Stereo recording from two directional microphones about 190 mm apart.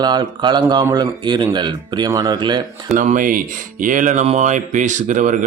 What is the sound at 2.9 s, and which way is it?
Speech, 40° right (ahead or behind).